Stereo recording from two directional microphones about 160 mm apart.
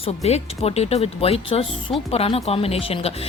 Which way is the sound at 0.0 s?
40° left (ahead or behind).